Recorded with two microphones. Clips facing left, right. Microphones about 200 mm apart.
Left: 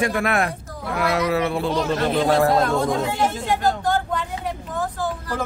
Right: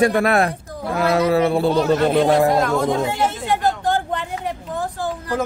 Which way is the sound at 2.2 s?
20° right (ahead or behind).